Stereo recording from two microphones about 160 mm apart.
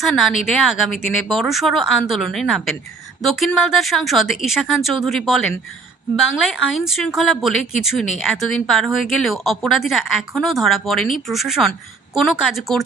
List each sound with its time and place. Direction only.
0.0 s speech: centre (ahead or behind)